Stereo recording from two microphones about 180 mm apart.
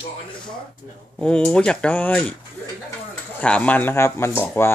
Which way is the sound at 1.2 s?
5° left (ahead or behind).